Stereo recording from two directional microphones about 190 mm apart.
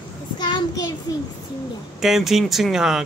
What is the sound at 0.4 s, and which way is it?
Child singing, 20° left (ahead or behind).